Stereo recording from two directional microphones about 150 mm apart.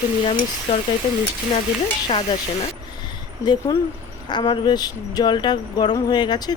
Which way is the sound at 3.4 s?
30° left (ahead or behind).